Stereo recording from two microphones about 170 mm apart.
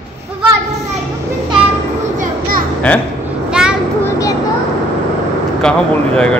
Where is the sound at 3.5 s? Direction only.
5° right (ahead or behind).